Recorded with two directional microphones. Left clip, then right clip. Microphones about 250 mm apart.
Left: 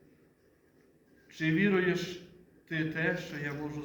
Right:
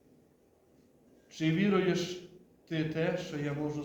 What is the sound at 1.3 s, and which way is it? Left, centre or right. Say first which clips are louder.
A man's voice: left 1 dB; centre.